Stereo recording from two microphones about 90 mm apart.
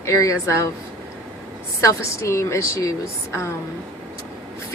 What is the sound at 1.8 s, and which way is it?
Speech, 35° left (ahead or behind).